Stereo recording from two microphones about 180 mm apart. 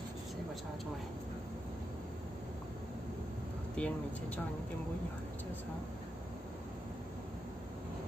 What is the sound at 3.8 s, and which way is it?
Speech, 5° left (ahead or behind).